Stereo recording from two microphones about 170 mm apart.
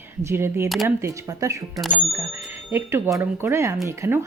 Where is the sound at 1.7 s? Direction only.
Centre (ahead or behind).